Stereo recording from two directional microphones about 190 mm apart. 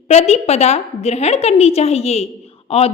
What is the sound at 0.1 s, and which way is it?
A woman's voice, 35° left (ahead or behind).